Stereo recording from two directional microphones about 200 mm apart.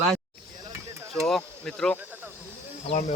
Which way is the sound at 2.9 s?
35° left (ahead or behind).